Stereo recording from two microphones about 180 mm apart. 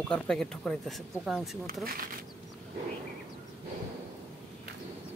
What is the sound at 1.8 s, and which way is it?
Speech, 55° right (ahead or behind).